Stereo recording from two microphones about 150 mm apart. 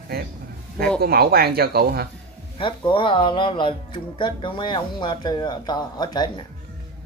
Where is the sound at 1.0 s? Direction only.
90° right.